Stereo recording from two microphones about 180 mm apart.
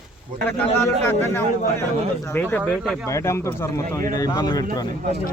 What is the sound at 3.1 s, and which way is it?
Speech, 15° left (ahead or behind).